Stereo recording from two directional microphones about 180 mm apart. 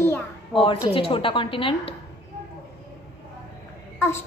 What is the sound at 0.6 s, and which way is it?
A woman's voice, 30° left (ahead or behind).